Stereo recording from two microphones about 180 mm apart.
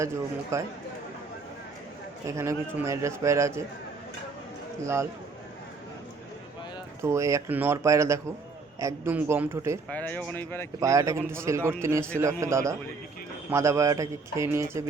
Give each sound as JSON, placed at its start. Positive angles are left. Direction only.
{"t": 0.5, "sound": "a man's voice", "side_deg": -15}
{"t": 2.2, "sound": "a man's voice", "side_deg": -15}
{"t": 4.8, "sound": "a man's voice", "side_deg": -15}
{"t": 7.0, "sound": "a man's voice", "side_deg": -15}
{"t": 9.9, "sound": "speech", "side_deg": 10}
{"t": 10.8, "sound": "a man's voice", "side_deg": -20}